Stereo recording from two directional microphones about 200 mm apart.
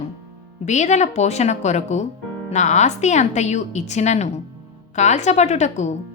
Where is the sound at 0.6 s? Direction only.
35° left (ahead or behind).